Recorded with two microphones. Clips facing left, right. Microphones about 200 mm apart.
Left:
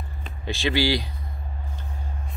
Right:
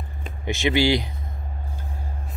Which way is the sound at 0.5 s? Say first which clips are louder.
Right 3 dB; 20° right (ahead or behind).